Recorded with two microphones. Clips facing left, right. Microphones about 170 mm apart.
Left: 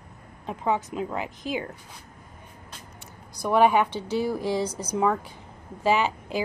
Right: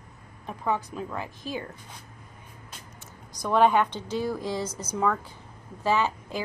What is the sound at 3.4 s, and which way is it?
Speech, 10° left (ahead or behind).